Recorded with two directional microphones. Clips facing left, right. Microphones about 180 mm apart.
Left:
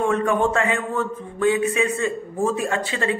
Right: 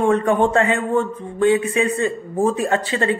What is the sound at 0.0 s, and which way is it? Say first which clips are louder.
A man's voice: right 3 dB; 35° right (ahead or behind).